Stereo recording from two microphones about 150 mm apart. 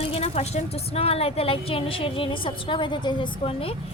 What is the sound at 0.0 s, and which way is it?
Speech, 40° left (ahead or behind).